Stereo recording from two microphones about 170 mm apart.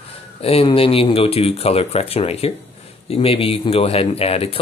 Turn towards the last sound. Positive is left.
turn(degrees=35)  # may be behind; listen again after turning